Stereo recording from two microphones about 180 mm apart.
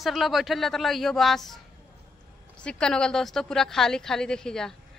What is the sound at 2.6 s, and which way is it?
A woman's voice, 5° left (ahead or behind).